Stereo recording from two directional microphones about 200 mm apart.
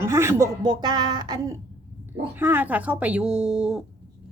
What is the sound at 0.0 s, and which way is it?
A woman's voice, 15° right (ahead or behind).